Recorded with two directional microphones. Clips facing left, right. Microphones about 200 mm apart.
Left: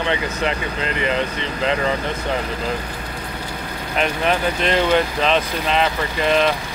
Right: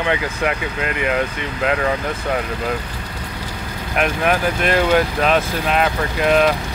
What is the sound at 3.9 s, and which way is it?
Speech, 5° right (ahead or behind).